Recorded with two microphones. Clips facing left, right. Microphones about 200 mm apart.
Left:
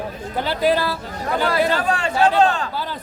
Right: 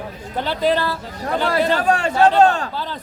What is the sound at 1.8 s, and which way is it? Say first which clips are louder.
Speech: right 3 dB; 45° right (ahead or behind).